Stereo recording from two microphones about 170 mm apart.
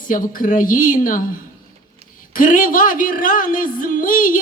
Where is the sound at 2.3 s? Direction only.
55° left (ahead or behind).